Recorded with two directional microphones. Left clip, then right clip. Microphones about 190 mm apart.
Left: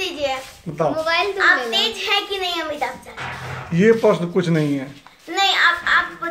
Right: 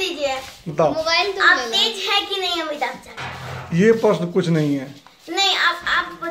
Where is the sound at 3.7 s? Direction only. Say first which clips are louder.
Left 1 dB; centre (ahead or behind).